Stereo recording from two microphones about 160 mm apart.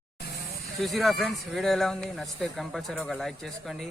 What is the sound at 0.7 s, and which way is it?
A man's voice, centre (ahead or behind).